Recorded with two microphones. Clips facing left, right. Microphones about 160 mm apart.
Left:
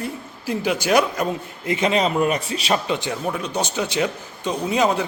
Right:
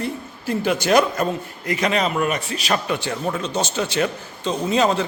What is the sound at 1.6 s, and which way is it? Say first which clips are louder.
A man's voice: left 1 dB; 25° left (ahead or behind).